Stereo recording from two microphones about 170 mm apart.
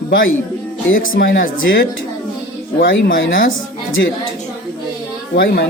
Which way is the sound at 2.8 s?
90° left.